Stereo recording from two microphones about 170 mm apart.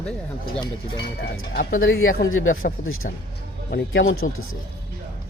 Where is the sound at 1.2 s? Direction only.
65° left (ahead or behind).